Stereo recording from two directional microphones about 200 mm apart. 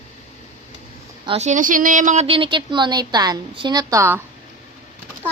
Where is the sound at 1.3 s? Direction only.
35° right (ahead or behind); by 4.2 s 15° right (ahead or behind).